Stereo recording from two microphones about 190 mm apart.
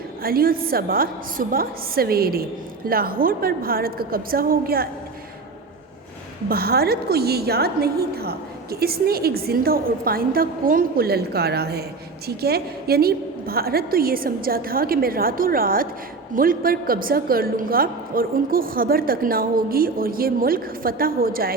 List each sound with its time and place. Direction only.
0.2 s a woman's voice: 50° right (ahead or behind)
6.5 s a woman's voice: 55° right (ahead or behind)